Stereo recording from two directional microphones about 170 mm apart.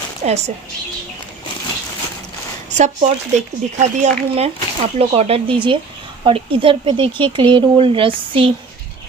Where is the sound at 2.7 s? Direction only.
45° right (ahead or behind).